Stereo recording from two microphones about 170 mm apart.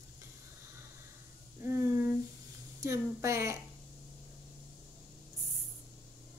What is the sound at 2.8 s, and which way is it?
Speech, 15° right (ahead or behind).